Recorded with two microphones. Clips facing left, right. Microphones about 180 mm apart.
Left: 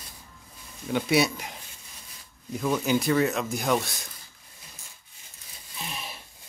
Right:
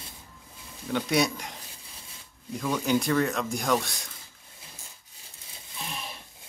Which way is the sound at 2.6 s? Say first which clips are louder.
Left 1 dB; 5° left (ahead or behind).